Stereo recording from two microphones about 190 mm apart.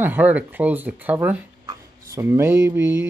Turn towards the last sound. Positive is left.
turn(degrees=-10)  # may be behind; listen again after turning